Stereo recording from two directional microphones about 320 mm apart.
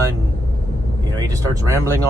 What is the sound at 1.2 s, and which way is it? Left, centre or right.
Speech, centre.